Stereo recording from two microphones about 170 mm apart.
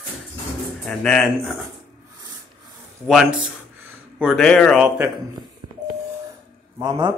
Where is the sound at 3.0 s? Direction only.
Centre (ahead or behind).